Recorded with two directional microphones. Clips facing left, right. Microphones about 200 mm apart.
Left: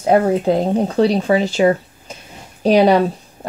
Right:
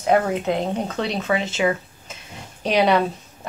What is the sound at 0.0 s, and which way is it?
Speech, 35° left (ahead or behind).